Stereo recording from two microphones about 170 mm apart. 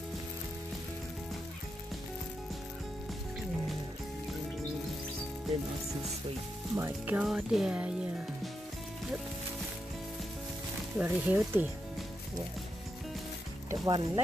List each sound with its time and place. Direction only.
6.7 s speech: 15° right (ahead or behind)
11.0 s speech: 10° right (ahead or behind)
13.7 s speech: 25° right (ahead or behind)